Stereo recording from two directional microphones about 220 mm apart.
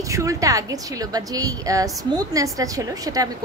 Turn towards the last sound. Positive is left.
turn(degrees=-15)  # may be behind; listen again after turning